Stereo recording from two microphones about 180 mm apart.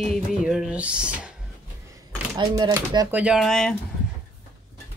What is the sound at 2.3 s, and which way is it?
Speech, 25° right (ahead or behind).